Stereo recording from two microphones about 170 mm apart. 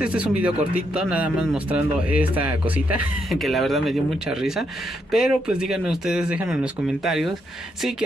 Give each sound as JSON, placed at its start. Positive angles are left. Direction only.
{"t": 0.0, "sound": "speech", "side_deg": -5}